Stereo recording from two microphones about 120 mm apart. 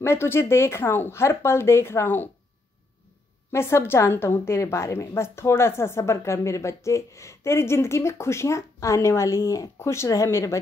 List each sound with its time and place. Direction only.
0.0 s a woman's voice: 20° left (ahead or behind)
3.5 s a woman's voice: 20° left (ahead or behind)